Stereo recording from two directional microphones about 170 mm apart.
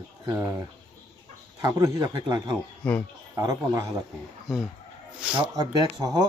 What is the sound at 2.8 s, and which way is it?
Speech, 5° left (ahead or behind).